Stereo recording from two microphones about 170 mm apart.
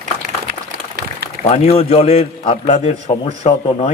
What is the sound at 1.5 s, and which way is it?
A man's voice, 40° left (ahead or behind).